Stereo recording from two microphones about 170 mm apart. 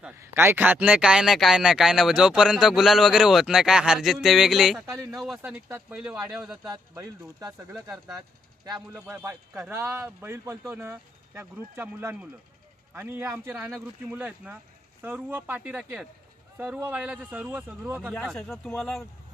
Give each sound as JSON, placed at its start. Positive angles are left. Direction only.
{"t": 0.2, "sound": "a man's voice", "side_deg": -15}
{"t": 6.7, "sound": "speech", "side_deg": -20}
{"t": 9.0, "sound": "a man's voice", "side_deg": -10}
{"t": 18.1, "sound": "speech", "side_deg": 5}